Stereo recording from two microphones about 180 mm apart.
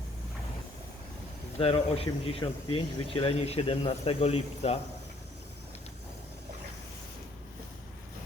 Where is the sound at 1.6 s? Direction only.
35° left (ahead or behind).